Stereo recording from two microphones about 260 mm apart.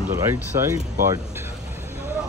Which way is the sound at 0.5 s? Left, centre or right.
Centre.